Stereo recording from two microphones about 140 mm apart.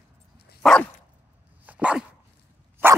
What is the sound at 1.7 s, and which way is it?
Dog, 10° right (ahead or behind).